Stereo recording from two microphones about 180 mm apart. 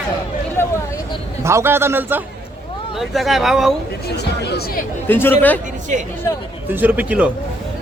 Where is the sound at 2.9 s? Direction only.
Centre (ahead or behind).